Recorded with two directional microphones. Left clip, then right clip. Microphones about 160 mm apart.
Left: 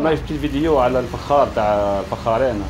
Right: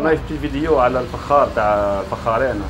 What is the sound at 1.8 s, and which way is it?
Speech, 25° left (ahead or behind).